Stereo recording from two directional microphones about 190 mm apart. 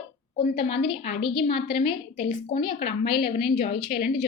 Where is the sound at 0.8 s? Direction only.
30° left (ahead or behind).